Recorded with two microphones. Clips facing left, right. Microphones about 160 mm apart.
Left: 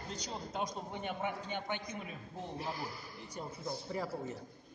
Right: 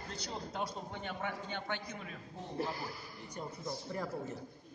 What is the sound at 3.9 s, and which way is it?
Speech, 5° left (ahead or behind).